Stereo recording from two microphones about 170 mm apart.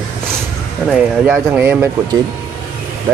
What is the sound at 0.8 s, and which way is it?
Speech, 5° right (ahead or behind).